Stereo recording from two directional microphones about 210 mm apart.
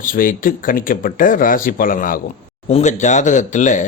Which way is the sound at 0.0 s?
40° left (ahead or behind).